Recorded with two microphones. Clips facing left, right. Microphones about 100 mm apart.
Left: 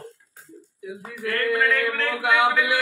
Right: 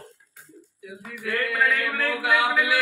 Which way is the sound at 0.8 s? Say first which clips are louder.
Left 4 dB; 30° left (ahead or behind).